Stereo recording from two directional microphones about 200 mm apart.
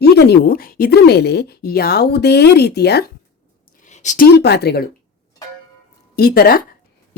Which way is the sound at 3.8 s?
35° left (ahead or behind).